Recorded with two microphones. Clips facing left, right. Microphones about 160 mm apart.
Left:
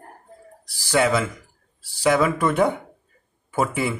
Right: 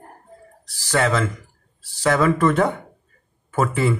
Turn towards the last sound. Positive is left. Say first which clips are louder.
# right 3 dB
turn(degrees=15)  # may be behind; listen again after turning